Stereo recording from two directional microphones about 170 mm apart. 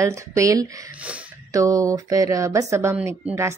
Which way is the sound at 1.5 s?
20° right (ahead or behind).